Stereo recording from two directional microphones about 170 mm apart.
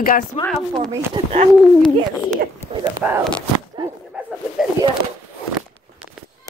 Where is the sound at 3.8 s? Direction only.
25° right (ahead or behind).